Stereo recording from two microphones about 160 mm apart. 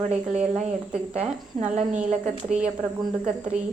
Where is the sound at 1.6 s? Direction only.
50° right (ahead or behind).